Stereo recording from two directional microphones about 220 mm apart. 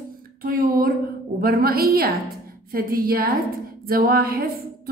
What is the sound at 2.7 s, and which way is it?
Speech, 40° right (ahead or behind).